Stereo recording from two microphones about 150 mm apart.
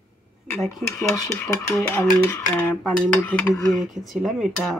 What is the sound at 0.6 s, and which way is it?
Speech, centre (ahead or behind).